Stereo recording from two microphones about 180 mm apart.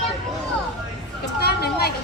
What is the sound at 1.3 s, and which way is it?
Speech, 65° left (ahead or behind).